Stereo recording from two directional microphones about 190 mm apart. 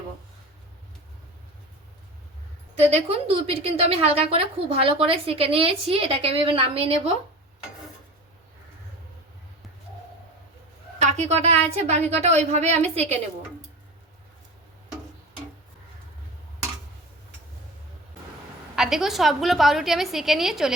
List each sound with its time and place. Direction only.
2.7 s a woman's voice: 35° right (ahead or behind)
11.0 s a woman's voice: 35° right (ahead or behind)
18.8 s a woman's voice: 5° right (ahead or behind)